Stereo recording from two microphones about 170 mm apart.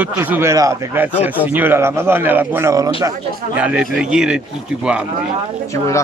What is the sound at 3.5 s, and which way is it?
Speech, 5° right (ahead or behind).